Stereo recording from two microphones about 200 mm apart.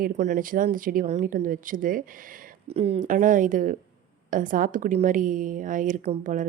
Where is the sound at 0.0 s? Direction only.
40° right (ahead or behind).